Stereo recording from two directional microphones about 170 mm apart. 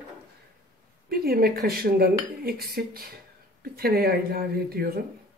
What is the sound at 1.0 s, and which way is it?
Speech, 65° right (ahead or behind).